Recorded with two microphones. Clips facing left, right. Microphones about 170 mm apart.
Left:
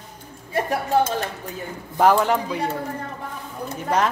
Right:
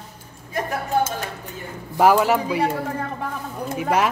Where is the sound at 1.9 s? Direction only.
5° right (ahead or behind).